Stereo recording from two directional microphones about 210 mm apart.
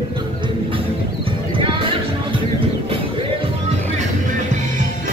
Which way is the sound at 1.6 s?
25° right (ahead or behind).